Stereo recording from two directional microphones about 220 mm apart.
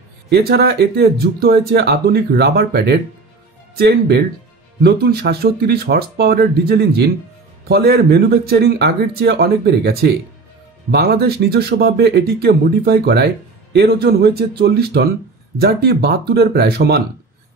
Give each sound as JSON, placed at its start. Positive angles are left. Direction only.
{"t": 0.3, "sound": "speech", "side_deg": -45}